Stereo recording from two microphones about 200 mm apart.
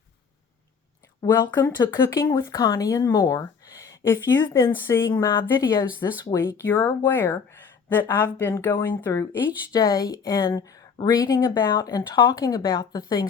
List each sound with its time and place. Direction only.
1.5 s speech: 20° left (ahead or behind)